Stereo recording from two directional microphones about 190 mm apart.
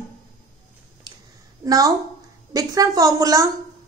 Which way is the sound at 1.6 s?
15° right (ahead or behind).